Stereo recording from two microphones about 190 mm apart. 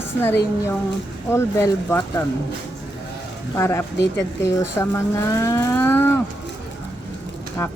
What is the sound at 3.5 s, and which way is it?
A woman's voice, 15° left (ahead or behind).